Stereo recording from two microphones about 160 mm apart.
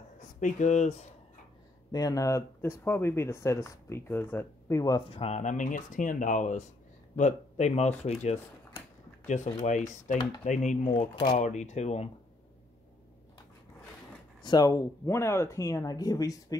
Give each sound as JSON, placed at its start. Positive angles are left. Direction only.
{"t": 0.4, "sound": "speech", "side_deg": 50}
{"t": 1.9, "sound": "speech", "side_deg": 25}
{"t": 5.1, "sound": "speech", "side_deg": 40}
{"t": 14.4, "sound": "speech", "side_deg": 25}